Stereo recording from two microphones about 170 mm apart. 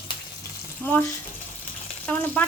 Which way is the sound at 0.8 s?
10° left (ahead or behind).